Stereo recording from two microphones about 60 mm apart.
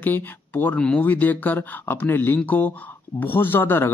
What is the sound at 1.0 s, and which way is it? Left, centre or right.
A man's voice, left.